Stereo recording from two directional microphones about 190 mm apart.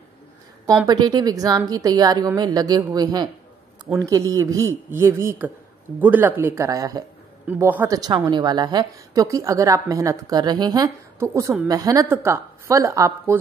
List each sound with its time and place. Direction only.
0.8 s a woman's voice: 20° right (ahead or behind)
8.0 s a woman's voice: 20° right (ahead or behind)